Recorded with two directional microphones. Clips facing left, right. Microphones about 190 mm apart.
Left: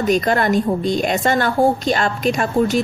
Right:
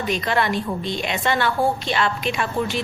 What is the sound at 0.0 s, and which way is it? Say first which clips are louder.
A woman's voice: left 6 dB; 45° left (ahead or behind).